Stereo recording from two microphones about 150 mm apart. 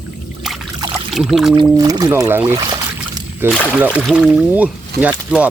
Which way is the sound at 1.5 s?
25° right (ahead or behind).